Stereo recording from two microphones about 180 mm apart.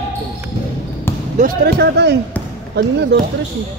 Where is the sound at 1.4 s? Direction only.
65° right (ahead or behind).